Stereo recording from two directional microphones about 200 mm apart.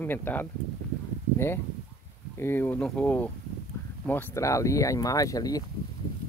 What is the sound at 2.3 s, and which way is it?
Speech, 10° left (ahead or behind).